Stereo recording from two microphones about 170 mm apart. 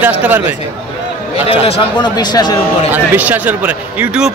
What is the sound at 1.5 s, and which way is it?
Speech, 35° left (ahead or behind).